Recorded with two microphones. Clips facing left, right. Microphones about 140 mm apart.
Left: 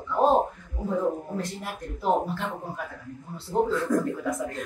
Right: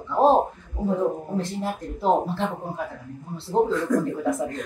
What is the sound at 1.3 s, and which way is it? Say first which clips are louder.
Speech: right 5 dB; 30° right (ahead or behind).